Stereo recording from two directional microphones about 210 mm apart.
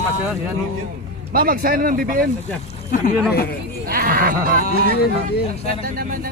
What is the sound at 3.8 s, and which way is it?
Speech, 45° right (ahead or behind).